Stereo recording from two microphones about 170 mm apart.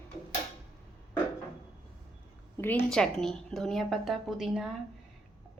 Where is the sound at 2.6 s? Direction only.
10° left (ahead or behind).